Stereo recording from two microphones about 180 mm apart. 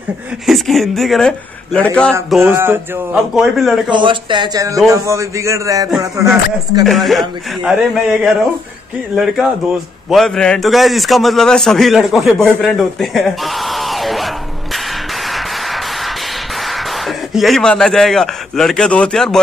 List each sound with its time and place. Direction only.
0.5 s a man's voice: centre (ahead or behind)
2.4 s a man's voice: 10° right (ahead or behind)
3.3 s a man's voice: centre (ahead or behind)
3.9 s a man's voice: 25° right (ahead or behind)
6.9 s a man's voice: centre (ahead or behind)
12.6 s a sound: centre (ahead or behind)
15.2 s music: centre (ahead or behind)
16.6 s speech: centre (ahead or behind)